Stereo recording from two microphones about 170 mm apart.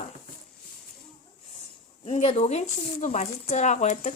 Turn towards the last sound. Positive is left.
turn(degrees=45)  # may be behind; listen again after turning